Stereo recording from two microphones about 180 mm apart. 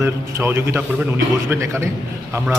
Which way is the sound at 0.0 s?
15° right (ahead or behind).